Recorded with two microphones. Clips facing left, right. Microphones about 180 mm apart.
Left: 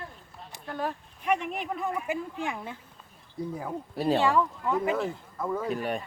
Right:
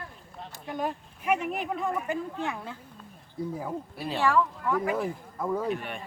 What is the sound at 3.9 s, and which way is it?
Speech, 40° left (ahead or behind).